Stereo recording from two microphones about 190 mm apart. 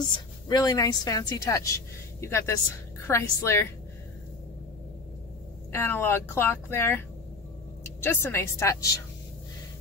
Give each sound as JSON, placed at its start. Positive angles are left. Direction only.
{"t": 0.5, "sound": "a woman's voice", "side_deg": 20}
{"t": 5.7, "sound": "a woman's voice", "side_deg": 10}